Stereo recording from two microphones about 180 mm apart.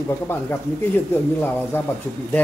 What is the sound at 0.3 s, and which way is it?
Speech, 15° left (ahead or behind).